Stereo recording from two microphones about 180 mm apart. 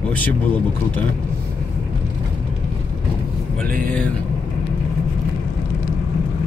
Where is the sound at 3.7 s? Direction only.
50° right (ahead or behind).